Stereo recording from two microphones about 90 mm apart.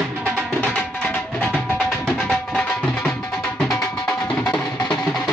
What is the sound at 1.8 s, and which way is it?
Music, 5° left (ahead or behind).